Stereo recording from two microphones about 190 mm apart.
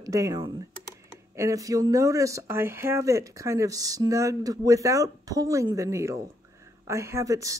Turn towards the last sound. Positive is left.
turn(degrees=-15)  # may be behind; listen again after turning